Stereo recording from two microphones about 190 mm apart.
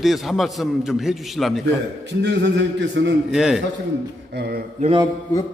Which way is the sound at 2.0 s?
65° right (ahead or behind).